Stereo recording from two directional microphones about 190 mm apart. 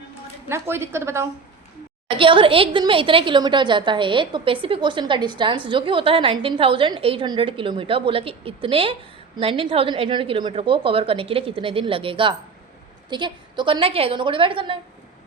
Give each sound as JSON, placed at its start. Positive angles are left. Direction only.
{"t": 0.4, "sound": "a woman's voice", "side_deg": -15}
{"t": 2.0, "sound": "speech", "side_deg": -25}